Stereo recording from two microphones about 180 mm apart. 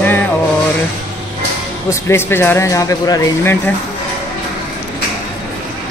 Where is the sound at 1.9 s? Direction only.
15° left (ahead or behind).